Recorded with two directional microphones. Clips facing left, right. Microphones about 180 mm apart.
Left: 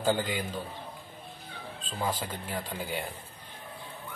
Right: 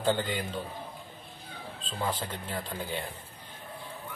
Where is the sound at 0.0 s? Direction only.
10° left (ahead or behind).